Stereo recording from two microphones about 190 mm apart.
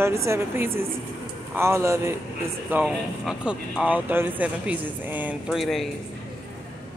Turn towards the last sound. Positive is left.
turn(degrees=0)  # may be behind; listen again after turning